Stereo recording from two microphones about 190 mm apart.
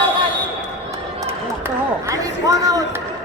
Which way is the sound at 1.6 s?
15° right (ahead or behind).